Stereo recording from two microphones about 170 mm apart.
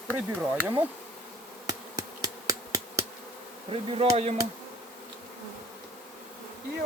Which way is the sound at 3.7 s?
35° right (ahead or behind).